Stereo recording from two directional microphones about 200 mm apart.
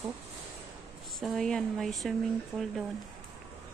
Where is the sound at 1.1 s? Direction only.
Centre (ahead or behind).